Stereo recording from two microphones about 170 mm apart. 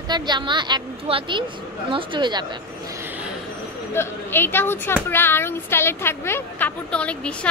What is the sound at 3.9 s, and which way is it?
A woman's voice, 15° left (ahead or behind).